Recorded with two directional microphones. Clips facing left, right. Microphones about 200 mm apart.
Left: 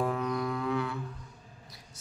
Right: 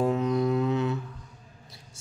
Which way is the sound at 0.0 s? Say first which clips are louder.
Right 6 dB; 25° right (ahead or behind).